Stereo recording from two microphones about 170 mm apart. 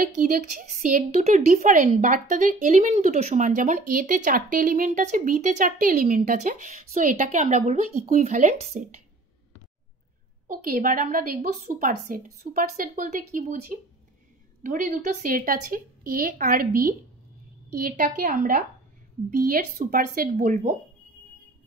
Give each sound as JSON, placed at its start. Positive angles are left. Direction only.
{"t": 0.0, "sound": "speech", "side_deg": -55}
{"t": 10.5, "sound": "a woman's voice", "side_deg": -55}
{"t": 14.6, "sound": "a woman's voice", "side_deg": -50}